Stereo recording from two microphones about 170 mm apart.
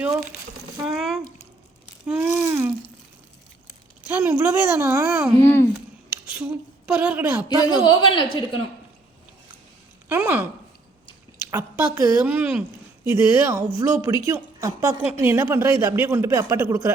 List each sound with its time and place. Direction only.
0.9 s a sound: centre (ahead or behind)
4.0 s speech: 10° right (ahead or behind)
5.4 s a child's voice: 15° left (ahead or behind)
6.3 s a woman's voice: 10° right (ahead or behind)
7.4 s speech: 25° left (ahead or behind)
10.1 s speech: 10° right (ahead or behind)
11.5 s speech: 15° right (ahead or behind)